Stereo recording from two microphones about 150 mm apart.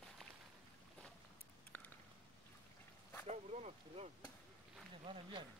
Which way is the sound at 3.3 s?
45° right (ahead or behind).